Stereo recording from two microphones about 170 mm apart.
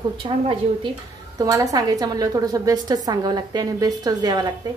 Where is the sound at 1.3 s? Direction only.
20° right (ahead or behind).